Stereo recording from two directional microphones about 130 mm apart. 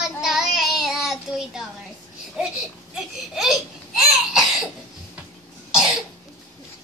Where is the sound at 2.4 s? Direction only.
5° right (ahead or behind).